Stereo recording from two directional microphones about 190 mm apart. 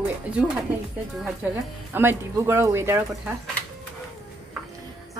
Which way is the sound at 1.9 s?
10° right (ahead or behind).